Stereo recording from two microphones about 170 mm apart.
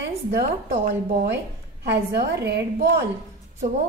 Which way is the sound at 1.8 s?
75° right (ahead or behind).